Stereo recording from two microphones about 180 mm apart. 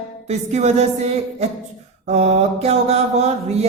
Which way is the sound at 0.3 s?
40° right (ahead or behind).